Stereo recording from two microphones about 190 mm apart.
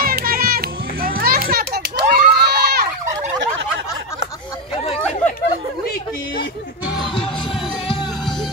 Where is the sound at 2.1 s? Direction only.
55° right (ahead or behind).